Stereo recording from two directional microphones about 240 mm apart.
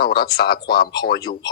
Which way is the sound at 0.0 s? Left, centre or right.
Left.